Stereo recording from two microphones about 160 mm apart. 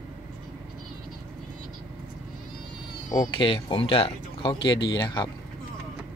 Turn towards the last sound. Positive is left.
turn(degrees=30)  # may be behind; listen again after turning